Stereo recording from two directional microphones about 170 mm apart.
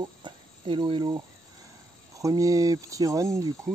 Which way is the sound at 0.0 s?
25° right (ahead or behind).